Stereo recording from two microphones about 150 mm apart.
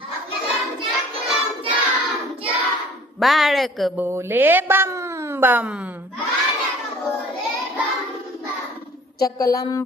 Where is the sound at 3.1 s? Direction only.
Centre (ahead or behind).